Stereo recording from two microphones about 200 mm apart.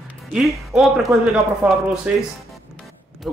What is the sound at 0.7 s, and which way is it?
Speech, centre (ahead or behind).